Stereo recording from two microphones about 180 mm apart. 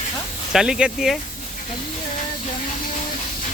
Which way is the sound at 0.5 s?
5° right (ahead or behind).